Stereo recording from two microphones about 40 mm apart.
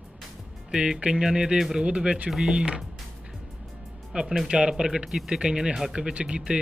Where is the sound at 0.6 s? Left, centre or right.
Centre.